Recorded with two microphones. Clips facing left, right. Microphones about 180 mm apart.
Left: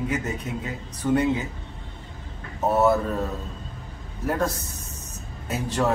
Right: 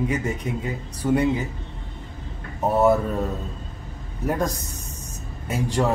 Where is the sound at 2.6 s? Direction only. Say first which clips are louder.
Right 2 dB; 15° right (ahead or behind).